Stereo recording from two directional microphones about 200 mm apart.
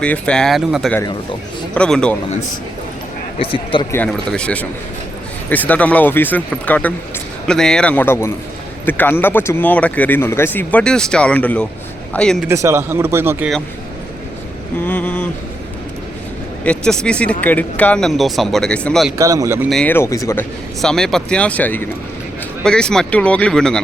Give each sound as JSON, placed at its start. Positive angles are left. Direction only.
{"t": 0.0, "sound": "speech", "side_deg": 5}
{"t": 3.3, "sound": "speech", "side_deg": 25}
{"t": 3.9, "sound": "speech", "side_deg": 5}
{"t": 12.5, "sound": "speech", "side_deg": -15}
{"t": 14.8, "sound": "vehicle", "side_deg": 10}
{"t": 16.6, "sound": "speech", "side_deg": 5}
{"t": 19.1, "sound": "speech", "side_deg": -15}
{"t": 19.7, "sound": "speech", "side_deg": 10}
{"t": 20.8, "sound": "speech", "side_deg": 5}